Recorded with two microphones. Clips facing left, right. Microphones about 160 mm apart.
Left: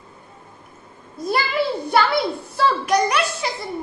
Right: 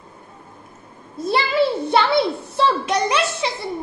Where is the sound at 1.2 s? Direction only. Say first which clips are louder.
Right 3 dB; 25° right (ahead or behind).